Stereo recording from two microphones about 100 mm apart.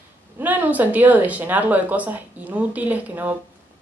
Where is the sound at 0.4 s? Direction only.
15° right (ahead or behind).